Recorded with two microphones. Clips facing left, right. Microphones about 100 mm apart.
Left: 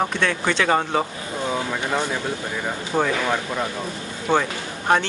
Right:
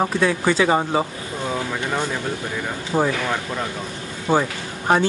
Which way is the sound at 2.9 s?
5° right (ahead or behind).